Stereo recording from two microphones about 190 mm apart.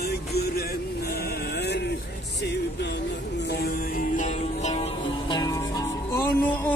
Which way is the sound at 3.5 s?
60° left (ahead or behind).